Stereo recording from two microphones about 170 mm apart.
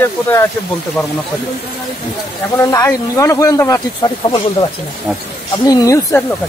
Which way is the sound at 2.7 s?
20° left (ahead or behind).